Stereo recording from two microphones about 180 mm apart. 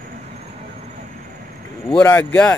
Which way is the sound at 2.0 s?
10° left (ahead or behind).